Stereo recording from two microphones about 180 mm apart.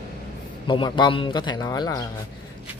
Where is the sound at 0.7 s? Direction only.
25° left (ahead or behind).